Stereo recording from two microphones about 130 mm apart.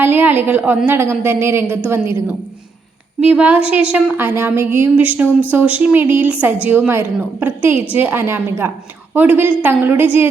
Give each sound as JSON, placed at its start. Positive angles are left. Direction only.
{"t": 0.0, "sound": "a woman's voice", "side_deg": -15}
{"t": 3.2, "sound": "a woman's voice", "side_deg": -10}